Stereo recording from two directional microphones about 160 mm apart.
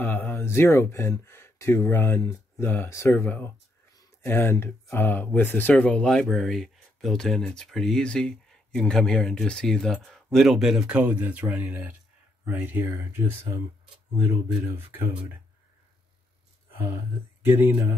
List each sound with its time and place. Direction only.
0.0 s speech: 10° left (ahead or behind); by 13.2 s 10° right (ahead or behind)
17.4 s speech: 15° right (ahead or behind)